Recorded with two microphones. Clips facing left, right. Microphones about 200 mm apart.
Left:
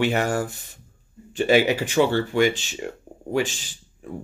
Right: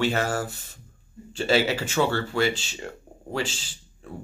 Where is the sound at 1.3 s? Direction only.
15° left (ahead or behind).